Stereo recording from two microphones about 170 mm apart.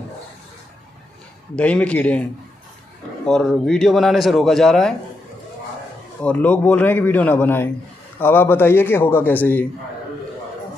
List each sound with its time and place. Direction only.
1.5 s a man's voice: 10° left (ahead or behind)
3.3 s a man's voice: 5° left (ahead or behind)
6.2 s a man's voice: 10° left (ahead or behind)